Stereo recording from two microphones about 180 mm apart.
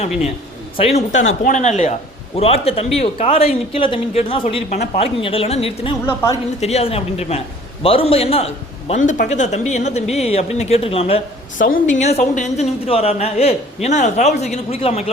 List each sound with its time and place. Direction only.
0.8 s a man's voice: 35° left (ahead or behind)
1.1 s speech: 90° left
1.5 s a man's voice: 40° left (ahead or behind)
11.5 s a woman's voice: 50° left (ahead or behind)
11.9 s a man's voice: 40° left (ahead or behind)